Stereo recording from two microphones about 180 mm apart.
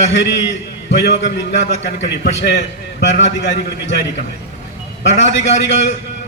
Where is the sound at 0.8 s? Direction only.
75° left (ahead or behind).